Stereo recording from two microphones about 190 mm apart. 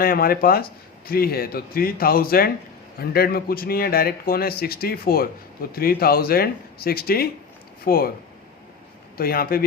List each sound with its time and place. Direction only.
0.0 s speech: 50° left (ahead or behind)
9.1 s speech: 50° left (ahead or behind)